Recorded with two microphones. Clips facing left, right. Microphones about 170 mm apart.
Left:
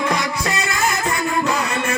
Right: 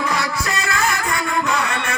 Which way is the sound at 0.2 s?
20° left (ahead or behind).